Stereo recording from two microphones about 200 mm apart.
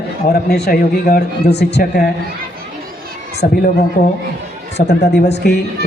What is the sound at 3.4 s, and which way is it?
Speech, 50° left (ahead or behind).